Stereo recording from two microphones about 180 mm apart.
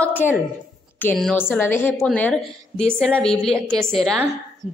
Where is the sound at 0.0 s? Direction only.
10° left (ahead or behind).